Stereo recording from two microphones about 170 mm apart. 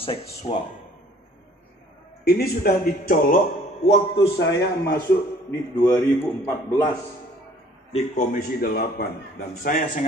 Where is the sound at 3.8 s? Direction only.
40° left (ahead or behind).